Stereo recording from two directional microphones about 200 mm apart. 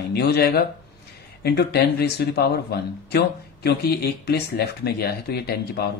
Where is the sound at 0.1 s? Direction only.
55° left (ahead or behind).